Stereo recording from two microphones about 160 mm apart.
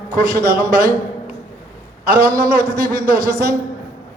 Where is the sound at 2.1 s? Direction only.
80° right.